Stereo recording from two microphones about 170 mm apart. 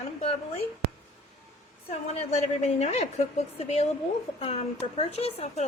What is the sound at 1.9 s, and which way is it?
Speech, 40° left (ahead or behind).